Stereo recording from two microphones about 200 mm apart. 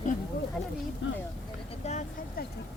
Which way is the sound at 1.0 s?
70° left (ahead or behind).